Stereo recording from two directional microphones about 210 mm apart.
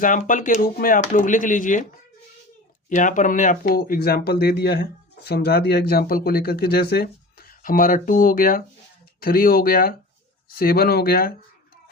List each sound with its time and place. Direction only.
0.0 s speech: 40° left (ahead or behind)
2.9 s speech: 35° left (ahead or behind)